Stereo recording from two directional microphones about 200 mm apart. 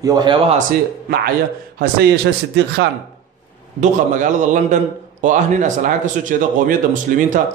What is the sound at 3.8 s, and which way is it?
A man's voice, 40° right (ahead or behind).